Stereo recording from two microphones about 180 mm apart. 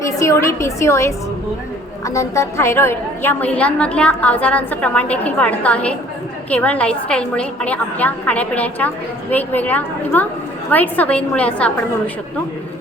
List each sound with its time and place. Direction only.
0.0 s a woman's voice: 15° left (ahead or behind)